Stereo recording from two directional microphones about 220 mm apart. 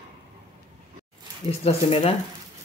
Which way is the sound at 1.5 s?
25° left (ahead or behind).